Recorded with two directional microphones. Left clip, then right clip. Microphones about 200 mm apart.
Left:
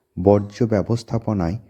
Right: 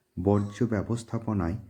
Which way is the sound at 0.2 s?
30° left (ahead or behind).